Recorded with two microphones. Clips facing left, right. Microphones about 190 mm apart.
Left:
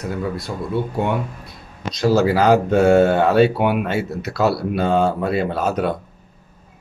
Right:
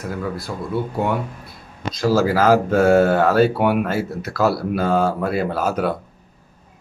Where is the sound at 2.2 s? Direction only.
Centre (ahead or behind).